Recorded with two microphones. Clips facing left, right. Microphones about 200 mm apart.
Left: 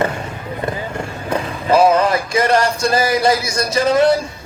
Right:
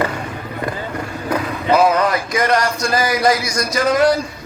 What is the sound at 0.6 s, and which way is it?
Vehicle, 25° left (ahead or behind).